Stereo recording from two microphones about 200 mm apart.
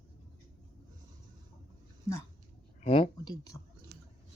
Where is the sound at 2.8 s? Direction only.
30° left (ahead or behind).